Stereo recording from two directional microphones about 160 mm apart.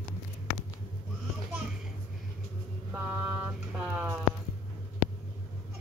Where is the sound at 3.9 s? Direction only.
10° right (ahead or behind).